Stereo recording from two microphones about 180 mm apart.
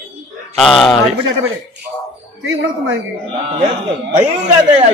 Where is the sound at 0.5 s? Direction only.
Centre (ahead or behind).